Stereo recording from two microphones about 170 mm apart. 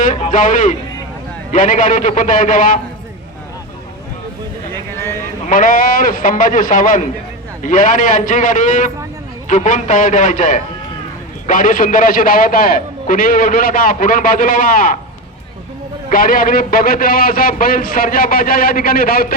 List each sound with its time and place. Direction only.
0.0 s a sound: 45° left (ahead or behind)
1.5 s a man's voice: 50° left (ahead or behind)
4.7 s clip-clop: 15° left (ahead or behind)
5.5 s a man's voice: 55° left (ahead or behind)
16.0 s a man's voice: 55° left (ahead or behind)